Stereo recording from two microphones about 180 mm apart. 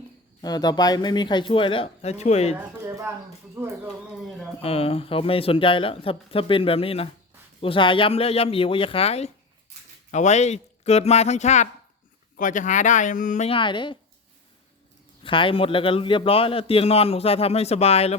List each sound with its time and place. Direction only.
0.4 s speech: 20° left (ahead or behind)
3.8 s speech: 5° right (ahead or behind)
4.6 s a man's voice: 35° left (ahead or behind)
13.5 s speech: 25° left (ahead or behind)
15.2 s a man's voice: 30° left (ahead or behind)